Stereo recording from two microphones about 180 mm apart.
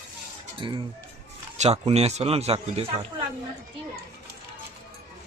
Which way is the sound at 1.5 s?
40° right (ahead or behind).